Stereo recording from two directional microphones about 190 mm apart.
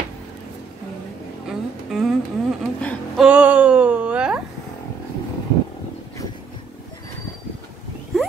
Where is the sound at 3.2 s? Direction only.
5° right (ahead or behind).